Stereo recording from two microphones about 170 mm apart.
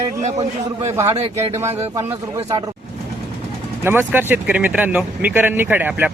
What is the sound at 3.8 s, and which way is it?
Speech, 10° right (ahead or behind).